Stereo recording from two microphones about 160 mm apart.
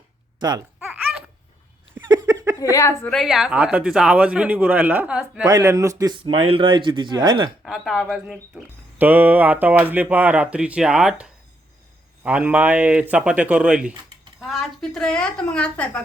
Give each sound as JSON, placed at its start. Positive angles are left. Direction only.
{"t": 0.3, "sound": "speech", "side_deg": -25}
{"t": 0.8, "sound": "babbling", "side_deg": -10}
{"t": 2.0, "sound": "a sound", "side_deg": -20}
{"t": 2.6, "sound": "a woman's voice", "side_deg": 20}
{"t": 3.1, "sound": "speech", "side_deg": 0}
{"t": 5.5, "sound": "speech", "side_deg": -20}
{"t": 6.3, "sound": "speech", "side_deg": -35}
{"t": 7.6, "sound": "a woman's voice", "side_deg": 0}